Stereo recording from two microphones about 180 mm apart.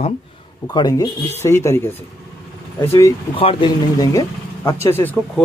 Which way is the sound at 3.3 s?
30° left (ahead or behind).